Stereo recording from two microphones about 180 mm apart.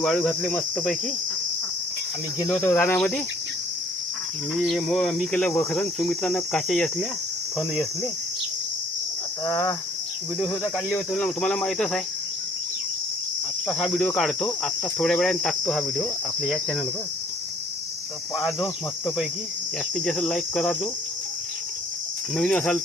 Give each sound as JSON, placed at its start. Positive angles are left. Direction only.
{"t": 0.0, "sound": "cricket", "side_deg": 5}
{"t": 2.5, "sound": "cricket", "side_deg": 10}
{"t": 4.5, "sound": "cricket", "side_deg": 0}
{"t": 9.5, "sound": "cricket", "side_deg": 15}
{"t": 10.5, "sound": "cricket", "side_deg": 5}
{"t": 13.7, "sound": "cricket", "side_deg": 5}
{"t": 18.3, "sound": "cricket", "side_deg": 0}
{"t": 20.1, "sound": "cricket", "side_deg": 0}
{"t": 22.4, "sound": "cricket", "side_deg": 5}